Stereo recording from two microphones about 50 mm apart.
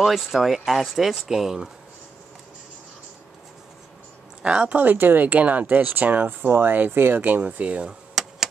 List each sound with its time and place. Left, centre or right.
0.0 s speech: centre
4.4 s speech: centre
4.6 s speech: right
7.2 s speech: right
8.1 s a sound: centre